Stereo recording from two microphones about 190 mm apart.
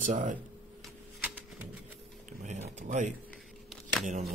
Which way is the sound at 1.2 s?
10° right (ahead or behind).